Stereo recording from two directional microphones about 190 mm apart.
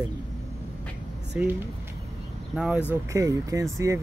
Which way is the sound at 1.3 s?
5° right (ahead or behind).